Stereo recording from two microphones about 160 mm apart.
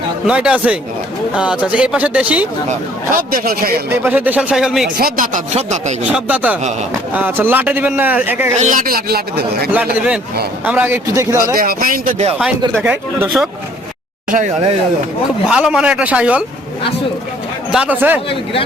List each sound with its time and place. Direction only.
0.3 s a man's voice: 5° right (ahead or behind)
2.6 s a man's voice: 60° right (ahead or behind)
3.8 s a man's voice: 10° right (ahead or behind)
4.9 s speech: 60° right (ahead or behind); by 6.0 s 45° right (ahead or behind)
6.1 s a man's voice: 10° right (ahead or behind)
8.6 s a man's voice: 55° right (ahead or behind); by 9.6 s 75° right (ahead or behind)
9.7 s a man's voice: 5° right (ahead or behind)
11.5 s a man's voice: 60° right (ahead or behind)
12.8 s a man's voice: 10° right (ahead or behind)
15.4 s a man's voice: 5° right (ahead or behind)
17.7 s a man's voice: 5° right (ahead or behind)